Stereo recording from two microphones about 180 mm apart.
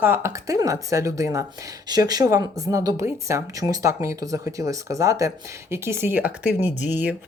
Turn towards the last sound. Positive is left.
turn(degrees=-10)  # may be behind; listen again after turning